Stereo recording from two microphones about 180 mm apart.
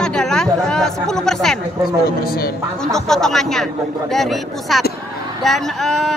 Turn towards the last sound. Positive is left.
turn(degrees=0)  # may be behind; listen again after turning